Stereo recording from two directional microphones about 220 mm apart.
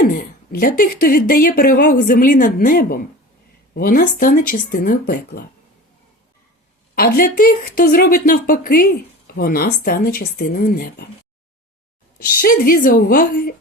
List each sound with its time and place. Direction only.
0.1 s speech: 40° left (ahead or behind)
6.9 s speech: 40° left (ahead or behind)
12.4 s speech: 40° left (ahead or behind)